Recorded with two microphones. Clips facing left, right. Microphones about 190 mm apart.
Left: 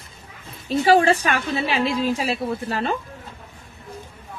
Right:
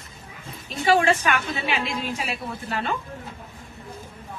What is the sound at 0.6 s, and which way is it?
A woman's voice, 35° left (ahead or behind).